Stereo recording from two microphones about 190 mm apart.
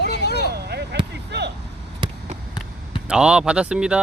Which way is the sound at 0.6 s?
60° right (ahead or behind).